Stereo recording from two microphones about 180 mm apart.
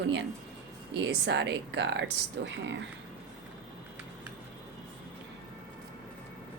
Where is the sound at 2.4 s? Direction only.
90° right.